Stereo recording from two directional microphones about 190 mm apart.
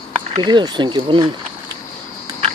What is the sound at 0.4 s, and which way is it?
Speech, 25° right (ahead or behind).